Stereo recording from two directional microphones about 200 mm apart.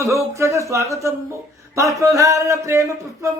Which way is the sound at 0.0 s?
15° right (ahead or behind).